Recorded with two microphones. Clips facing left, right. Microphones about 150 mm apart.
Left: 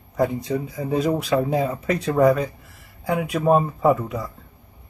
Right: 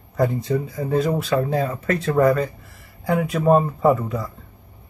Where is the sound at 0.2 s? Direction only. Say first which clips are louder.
Right 1 dB; 5° left (ahead or behind).